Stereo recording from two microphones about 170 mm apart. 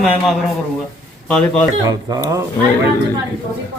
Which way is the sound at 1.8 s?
20° right (ahead or behind).